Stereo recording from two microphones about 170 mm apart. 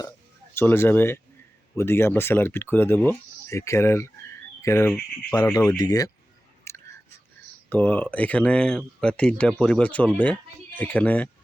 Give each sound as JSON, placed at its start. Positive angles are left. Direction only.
{"t": 0.5, "sound": "speech", "side_deg": 10}
{"t": 6.7, "sound": "whispering", "side_deg": 15}
{"t": 7.7, "sound": "speech", "side_deg": 10}